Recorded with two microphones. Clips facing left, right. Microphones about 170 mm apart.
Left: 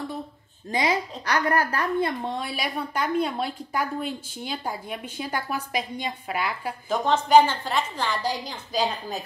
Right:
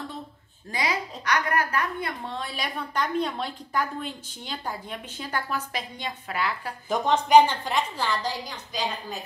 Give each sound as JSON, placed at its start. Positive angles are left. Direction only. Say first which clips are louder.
{"t": 0.7, "sound": "a woman's voice", "louder": "left 4 dB", "side_deg": 25}
{"t": 2.3, "sound": "a woman's voice", "louder": "left 3 dB", "side_deg": 10}
{"t": 6.9, "sound": "a woman's voice", "louder": "even", "side_deg": -15}
{"t": 8.5, "sound": "a woman's voice", "louder": "left 5 dB", "side_deg": 35}